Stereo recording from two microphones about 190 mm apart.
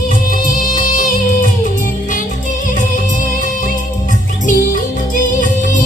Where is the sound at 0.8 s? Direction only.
45° left (ahead or behind).